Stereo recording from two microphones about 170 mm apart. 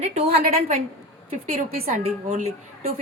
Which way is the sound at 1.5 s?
50° right (ahead or behind).